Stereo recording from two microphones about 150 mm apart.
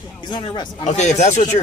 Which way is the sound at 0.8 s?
50° left (ahead or behind).